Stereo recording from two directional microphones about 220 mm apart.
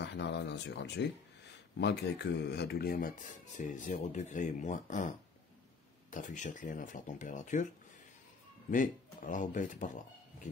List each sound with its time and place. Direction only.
0.0 s speech: 50° left (ahead or behind); by 7.6 s 35° left (ahead or behind)
8.6 s speech: 35° left (ahead or behind)